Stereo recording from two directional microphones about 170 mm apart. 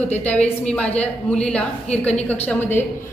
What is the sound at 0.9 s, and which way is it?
A woman's voice, 5° left (ahead or behind).